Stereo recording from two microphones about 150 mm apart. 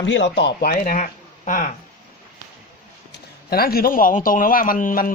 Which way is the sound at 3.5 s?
90° left.